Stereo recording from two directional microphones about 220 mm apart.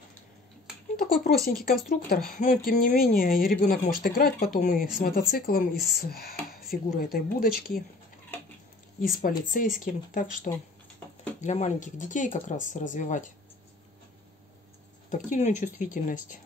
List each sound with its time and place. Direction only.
0.9 s speech: 45° left (ahead or behind)
9.5 s speech: 40° left (ahead or behind)
15.0 s speech: 35° left (ahead or behind)